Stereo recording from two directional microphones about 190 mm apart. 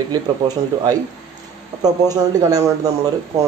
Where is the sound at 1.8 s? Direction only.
20° right (ahead or behind).